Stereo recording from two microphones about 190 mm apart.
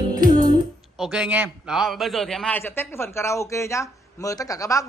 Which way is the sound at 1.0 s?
5° right (ahead or behind).